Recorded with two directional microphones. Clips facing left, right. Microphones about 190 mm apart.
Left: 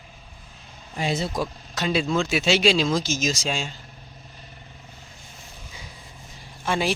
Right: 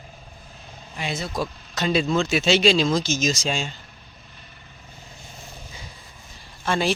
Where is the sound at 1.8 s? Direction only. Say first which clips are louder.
Right 2 dB; 5° left (ahead or behind).